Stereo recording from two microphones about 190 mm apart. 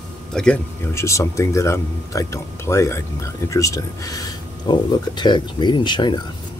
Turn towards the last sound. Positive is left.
turn(degrees=25)  # may be behind; listen again after turning